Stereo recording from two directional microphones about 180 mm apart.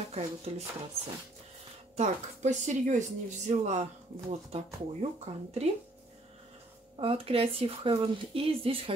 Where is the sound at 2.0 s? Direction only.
40° right (ahead or behind).